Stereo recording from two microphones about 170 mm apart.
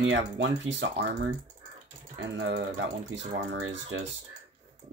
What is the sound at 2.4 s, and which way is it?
Speech, 90° right.